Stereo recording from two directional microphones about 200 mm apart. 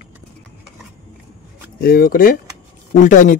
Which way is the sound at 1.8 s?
45° left (ahead or behind).